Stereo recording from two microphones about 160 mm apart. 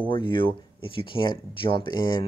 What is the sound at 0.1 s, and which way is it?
Speech, 30° left (ahead or behind).